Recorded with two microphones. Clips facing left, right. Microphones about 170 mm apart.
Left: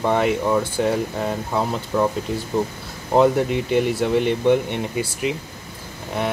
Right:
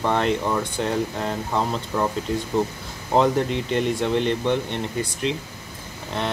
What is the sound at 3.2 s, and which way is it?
Speech, 5° left (ahead or behind).